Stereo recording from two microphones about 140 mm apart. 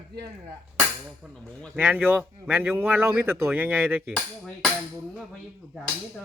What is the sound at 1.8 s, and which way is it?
Speech, 10° right (ahead or behind).